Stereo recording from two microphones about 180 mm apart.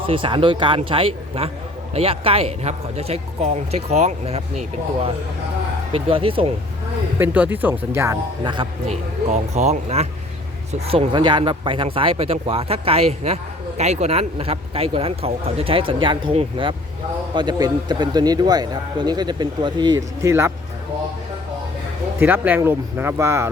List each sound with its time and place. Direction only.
0.0 s a man's voice: 30° right (ahead or behind)
5.9 s a man's voice: 30° right (ahead or behind)
7.2 s speech: 10° right (ahead or behind)
8.4 s a man's voice: 30° right (ahead or behind); by 20.5 s 15° right (ahead or behind)
22.2 s speech: 10° right (ahead or behind)